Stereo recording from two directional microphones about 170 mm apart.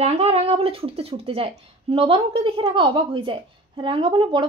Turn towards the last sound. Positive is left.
turn(degrees=-30)  # may be behind; listen again after turning